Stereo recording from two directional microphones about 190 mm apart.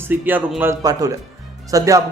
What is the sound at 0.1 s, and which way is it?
A man's voice, 10° right (ahead or behind).